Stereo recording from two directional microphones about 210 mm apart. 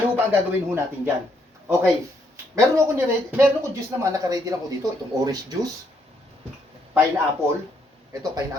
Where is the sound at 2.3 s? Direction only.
15° right (ahead or behind).